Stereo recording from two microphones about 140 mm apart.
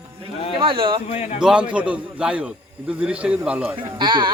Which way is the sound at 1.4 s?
5° right (ahead or behind).